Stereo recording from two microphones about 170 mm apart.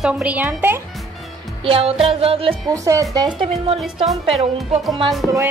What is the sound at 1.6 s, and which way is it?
Music, 35° right (ahead or behind).